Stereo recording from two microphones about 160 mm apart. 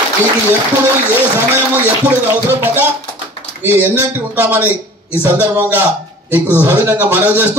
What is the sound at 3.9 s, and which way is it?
Speech, 10° right (ahead or behind).